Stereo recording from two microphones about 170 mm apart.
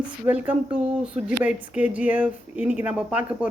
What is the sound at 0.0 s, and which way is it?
Speech, 10° right (ahead or behind).